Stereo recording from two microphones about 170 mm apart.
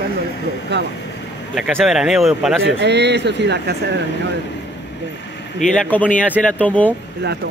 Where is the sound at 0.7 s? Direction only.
90° right.